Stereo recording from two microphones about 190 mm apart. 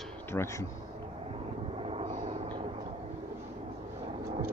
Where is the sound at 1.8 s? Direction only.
30° right (ahead or behind).